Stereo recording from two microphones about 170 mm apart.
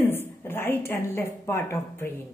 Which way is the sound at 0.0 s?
10° left (ahead or behind).